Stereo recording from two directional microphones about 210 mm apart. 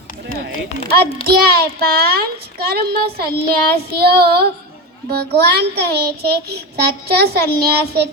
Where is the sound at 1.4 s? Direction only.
45° right (ahead or behind).